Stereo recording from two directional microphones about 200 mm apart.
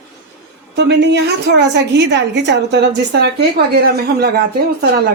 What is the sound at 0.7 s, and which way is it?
A woman's voice, 60° right (ahead or behind).